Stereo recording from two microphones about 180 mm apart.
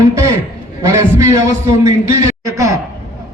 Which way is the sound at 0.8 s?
20° right (ahead or behind).